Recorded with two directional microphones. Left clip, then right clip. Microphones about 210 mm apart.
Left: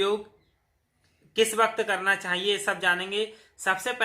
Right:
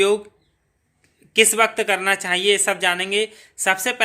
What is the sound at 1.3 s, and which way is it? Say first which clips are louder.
Speech: right 7 dB; 50° right (ahead or behind).